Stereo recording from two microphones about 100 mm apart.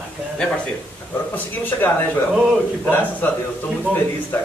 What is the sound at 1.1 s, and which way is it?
Speech, 15° left (ahead or behind).